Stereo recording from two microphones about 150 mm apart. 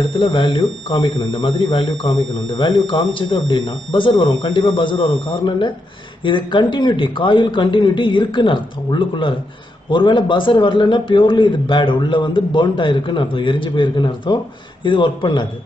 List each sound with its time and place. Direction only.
0.1 s speech: 35° left (ahead or behind)